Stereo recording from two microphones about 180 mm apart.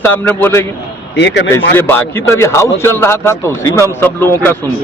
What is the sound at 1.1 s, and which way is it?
Speech, 75° left (ahead or behind).